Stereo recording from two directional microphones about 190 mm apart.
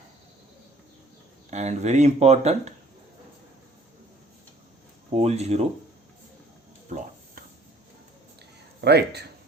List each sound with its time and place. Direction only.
1.5 s speech: 35° right (ahead or behind)
5.1 s speech: 35° right (ahead or behind)
6.9 s a sound: 35° right (ahead or behind)
8.8 s speech: 60° right (ahead or behind)